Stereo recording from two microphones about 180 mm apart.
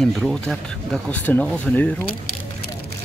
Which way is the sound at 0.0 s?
Centre (ahead or behind).